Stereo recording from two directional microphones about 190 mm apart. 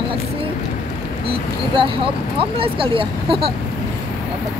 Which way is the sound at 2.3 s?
30° right (ahead or behind).